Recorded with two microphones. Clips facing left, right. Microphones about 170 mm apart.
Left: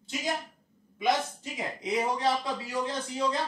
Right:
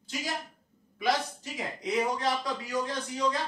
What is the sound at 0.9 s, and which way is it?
Speech, 20° left (ahead or behind).